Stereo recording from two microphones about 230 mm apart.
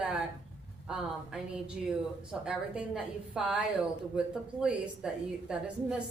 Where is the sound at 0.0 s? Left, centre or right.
Centre.